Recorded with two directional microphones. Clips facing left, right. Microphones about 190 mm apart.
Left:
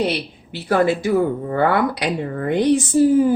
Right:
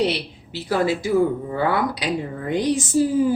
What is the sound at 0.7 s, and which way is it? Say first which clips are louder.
Speech: left 3 dB; 55° left (ahead or behind).